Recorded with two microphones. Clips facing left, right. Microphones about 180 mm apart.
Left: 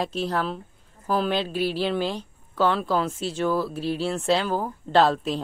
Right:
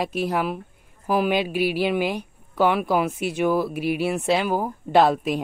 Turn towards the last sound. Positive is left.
turn(degrees=-10)  # may be behind; listen again after turning